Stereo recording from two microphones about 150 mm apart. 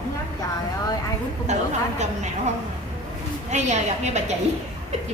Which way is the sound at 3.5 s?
50° right (ahead or behind).